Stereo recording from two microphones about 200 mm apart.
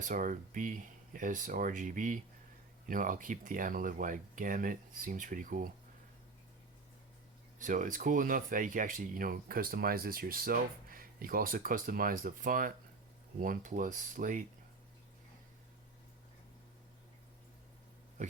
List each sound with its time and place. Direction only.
0.0 s speech: 40° right (ahead or behind)
7.6 s speech: 40° right (ahead or behind)